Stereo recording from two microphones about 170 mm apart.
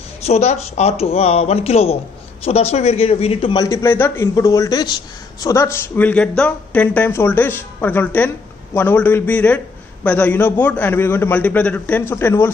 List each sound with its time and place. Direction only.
0.2 s a man's voice: 40° left (ahead or behind); by 12.4 s 15° left (ahead or behind)